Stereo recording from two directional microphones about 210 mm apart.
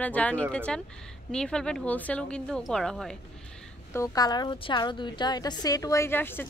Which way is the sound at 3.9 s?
15° left (ahead or behind).